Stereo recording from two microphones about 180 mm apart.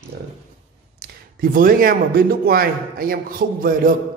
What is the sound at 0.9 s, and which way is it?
Speech, 50° right (ahead or behind).